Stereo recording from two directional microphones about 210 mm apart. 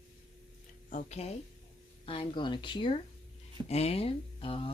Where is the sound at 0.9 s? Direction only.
30° left (ahead or behind).